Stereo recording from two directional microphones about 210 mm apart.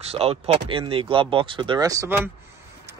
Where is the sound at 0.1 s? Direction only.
30° right (ahead or behind).